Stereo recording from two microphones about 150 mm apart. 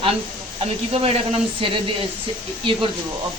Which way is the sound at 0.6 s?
40° right (ahead or behind).